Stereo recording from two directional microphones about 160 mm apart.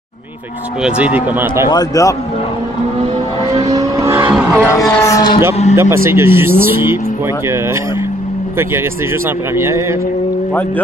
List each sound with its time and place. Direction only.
0.8 s speech: 10° right (ahead or behind)
1.7 s a man's voice: 20° left (ahead or behind)
3.5 s speech: 25° right (ahead or behind)
5.0 s a sound: 25° left (ahead or behind)
5.8 s speech: 15° right (ahead or behind)
9.6 s speech: 15° right (ahead or behind)